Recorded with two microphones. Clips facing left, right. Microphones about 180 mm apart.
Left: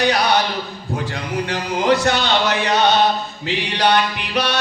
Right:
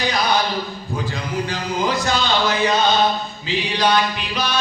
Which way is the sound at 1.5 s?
70° left (ahead or behind).